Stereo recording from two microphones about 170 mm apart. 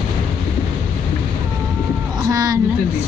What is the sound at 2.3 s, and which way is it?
Speech, 20° right (ahead or behind).